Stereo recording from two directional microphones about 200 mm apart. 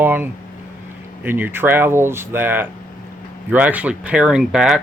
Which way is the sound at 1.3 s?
10° right (ahead or behind).